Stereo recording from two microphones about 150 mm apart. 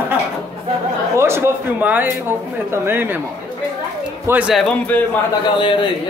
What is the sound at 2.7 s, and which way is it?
Speech, 15° right (ahead or behind).